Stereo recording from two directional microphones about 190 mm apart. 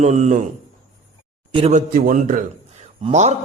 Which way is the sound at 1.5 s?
35° right (ahead or behind).